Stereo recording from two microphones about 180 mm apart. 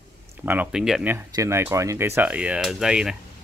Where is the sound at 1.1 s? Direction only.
15° right (ahead or behind).